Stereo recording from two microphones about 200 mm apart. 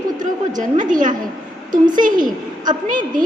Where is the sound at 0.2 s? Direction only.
40° right (ahead or behind).